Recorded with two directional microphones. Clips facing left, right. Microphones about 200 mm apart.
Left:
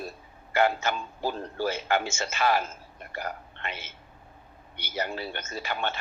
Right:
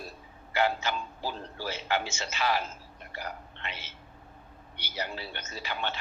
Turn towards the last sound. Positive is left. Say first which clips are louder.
# left 3 dB
turn(degrees=50)  # may be behind; listen again after turning